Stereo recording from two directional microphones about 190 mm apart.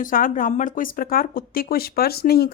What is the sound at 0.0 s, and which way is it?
Speech, 45° left (ahead or behind).